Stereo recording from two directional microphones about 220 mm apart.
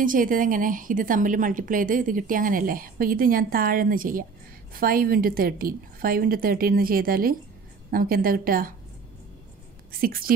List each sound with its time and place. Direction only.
0.0 s a woman's voice: 40° right (ahead or behind)
9.9 s a woman's voice: 40° right (ahead or behind)